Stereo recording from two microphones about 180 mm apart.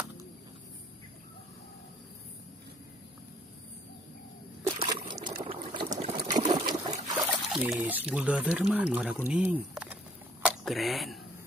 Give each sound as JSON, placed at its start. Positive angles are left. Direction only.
{"t": 4.6, "sound": "trickle", "side_deg": -25}
{"t": 5.4, "sound": "liquid", "side_deg": -30}
{"t": 6.1, "sound": "trickle", "side_deg": -25}
{"t": 7.5, "sound": "speech", "side_deg": -5}